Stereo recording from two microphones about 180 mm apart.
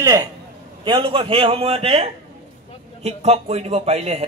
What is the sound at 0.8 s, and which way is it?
A man's voice, 30° right (ahead or behind).